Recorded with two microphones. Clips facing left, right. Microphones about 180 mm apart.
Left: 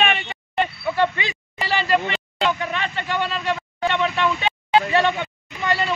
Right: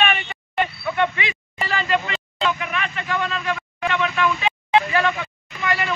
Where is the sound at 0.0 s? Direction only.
30° left (ahead or behind).